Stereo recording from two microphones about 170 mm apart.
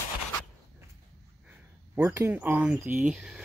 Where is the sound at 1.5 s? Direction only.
15° right (ahead or behind).